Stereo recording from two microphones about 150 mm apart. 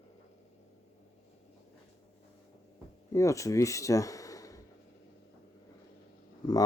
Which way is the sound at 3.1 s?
20° left (ahead or behind).